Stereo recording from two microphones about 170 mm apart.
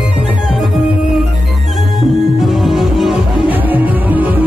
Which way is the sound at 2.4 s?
Centre (ahead or behind).